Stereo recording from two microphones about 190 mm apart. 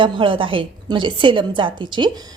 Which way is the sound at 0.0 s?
25° right (ahead or behind).